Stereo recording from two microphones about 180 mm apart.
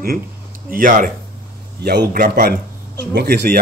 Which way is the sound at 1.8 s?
60° right (ahead or behind).